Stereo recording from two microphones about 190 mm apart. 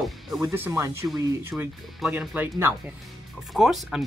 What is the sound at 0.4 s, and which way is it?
Speech, 15° right (ahead or behind).